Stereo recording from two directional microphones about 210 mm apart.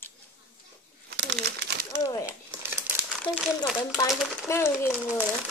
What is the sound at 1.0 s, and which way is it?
Crumpling, 55° right (ahead or behind).